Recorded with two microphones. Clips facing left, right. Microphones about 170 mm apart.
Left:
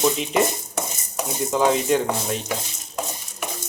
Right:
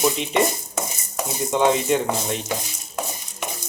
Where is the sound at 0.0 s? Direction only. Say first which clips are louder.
Even; centre (ahead or behind).